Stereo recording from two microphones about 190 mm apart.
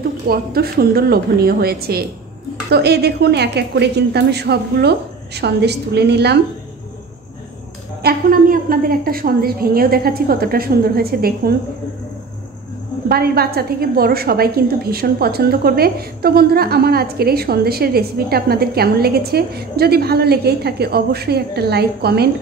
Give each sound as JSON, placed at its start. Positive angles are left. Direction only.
{"t": 0.3, "sound": "a woman's voice", "side_deg": -55}
{"t": 8.0, "sound": "a woman's voice", "side_deg": -50}
{"t": 13.1, "sound": "a woman's voice", "side_deg": -55}